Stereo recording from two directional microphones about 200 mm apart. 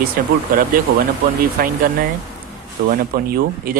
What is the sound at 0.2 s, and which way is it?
Speech, 50° right (ahead or behind).